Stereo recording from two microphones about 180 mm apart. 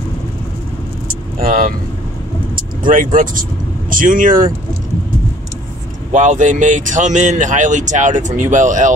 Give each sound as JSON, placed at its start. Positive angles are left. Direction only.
{"t": 1.0, "sound": "vehicle", "side_deg": -50}
{"t": 2.9, "sound": "speech", "side_deg": -45}
{"t": 6.1, "sound": "speech", "side_deg": -45}